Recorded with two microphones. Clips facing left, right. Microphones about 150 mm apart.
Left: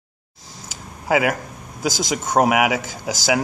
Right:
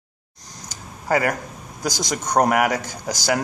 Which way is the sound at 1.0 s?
5° left (ahead or behind).